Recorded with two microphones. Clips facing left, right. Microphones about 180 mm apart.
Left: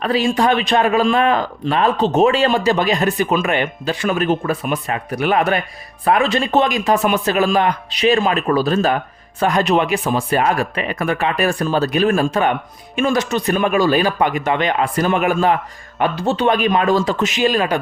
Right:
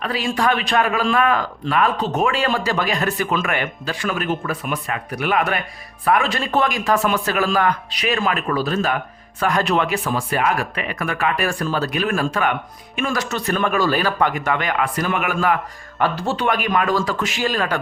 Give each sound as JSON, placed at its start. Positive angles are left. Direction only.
{"t": 0.0, "sound": "a man's voice", "side_deg": 25}
{"t": 9.4, "sound": "a man's voice", "side_deg": 20}